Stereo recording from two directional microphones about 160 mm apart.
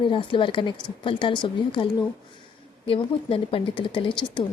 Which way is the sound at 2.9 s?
35° left (ahead or behind).